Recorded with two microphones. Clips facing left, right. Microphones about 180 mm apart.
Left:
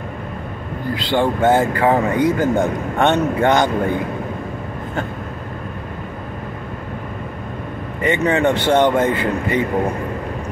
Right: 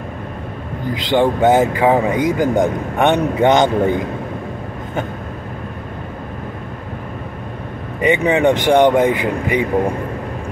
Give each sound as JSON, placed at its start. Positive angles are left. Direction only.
{"t": 0.9, "sound": "speech", "side_deg": -20}
{"t": 8.0, "sound": "speech", "side_deg": -15}